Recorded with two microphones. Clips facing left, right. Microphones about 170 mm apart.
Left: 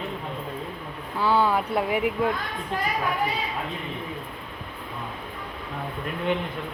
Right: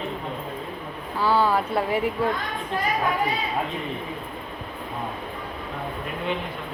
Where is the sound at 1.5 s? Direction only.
15° left (ahead or behind).